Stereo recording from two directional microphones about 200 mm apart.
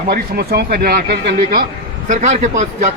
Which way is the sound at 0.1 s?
50° right (ahead or behind).